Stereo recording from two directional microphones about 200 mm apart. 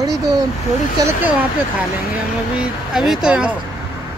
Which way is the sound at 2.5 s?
Centre (ahead or behind).